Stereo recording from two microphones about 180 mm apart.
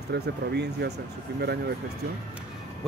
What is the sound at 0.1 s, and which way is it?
Speech, 70° right (ahead or behind).